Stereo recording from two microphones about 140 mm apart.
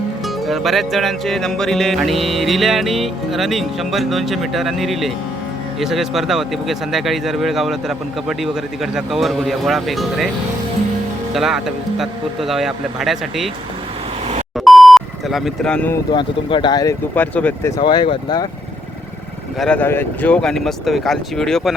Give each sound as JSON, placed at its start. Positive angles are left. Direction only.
{"t": 0.4, "sound": "music", "side_deg": 0}
{"t": 11.3, "sound": "music", "side_deg": 0}
{"t": 14.5, "sound": "beep", "side_deg": 0}
{"t": 16.1, "sound": "speech", "side_deg": 35}
{"t": 17.2, "sound": "speech", "side_deg": 10}
{"t": 17.7, "sound": "speech", "side_deg": 30}
{"t": 19.5, "sound": "music", "side_deg": 10}